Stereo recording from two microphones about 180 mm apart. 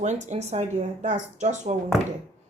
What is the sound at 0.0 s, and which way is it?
Speech, 40° right (ahead or behind).